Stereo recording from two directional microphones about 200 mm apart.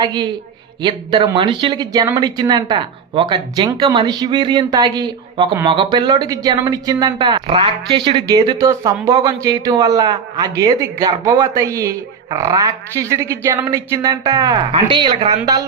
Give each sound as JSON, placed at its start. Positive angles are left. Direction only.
{"t": 0.0, "sound": "speech", "side_deg": -20}